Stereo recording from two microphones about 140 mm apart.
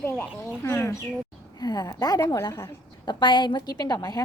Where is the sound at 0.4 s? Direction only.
20° left (ahead or behind).